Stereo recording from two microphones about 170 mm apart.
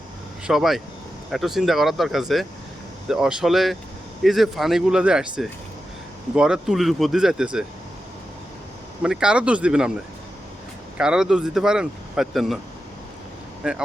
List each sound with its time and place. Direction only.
0.4 s speech: centre (ahead or behind)
9.0 s speech: 5° right (ahead or behind)
10.9 s speech: 5° right (ahead or behind)
13.6 s speech: 5° right (ahead or behind)